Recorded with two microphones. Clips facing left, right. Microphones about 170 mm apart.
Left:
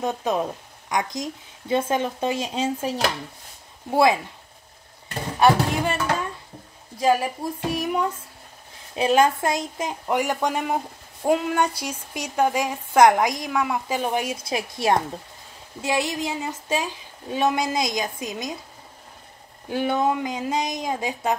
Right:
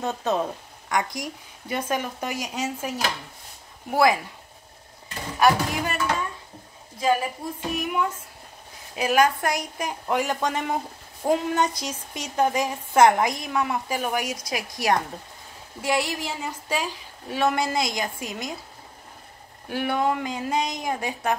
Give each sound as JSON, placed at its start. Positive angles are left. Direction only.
{"t": 0.0, "sound": "a woman's voice", "side_deg": 15}
{"t": 5.4, "sound": "a woman's voice", "side_deg": 25}
{"t": 7.4, "sound": "a woman's voice", "side_deg": 40}
{"t": 19.7, "sound": "a woman's voice", "side_deg": 20}